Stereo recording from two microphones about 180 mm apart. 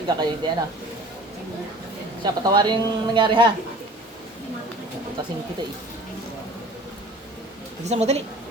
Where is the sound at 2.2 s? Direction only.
25° right (ahead or behind).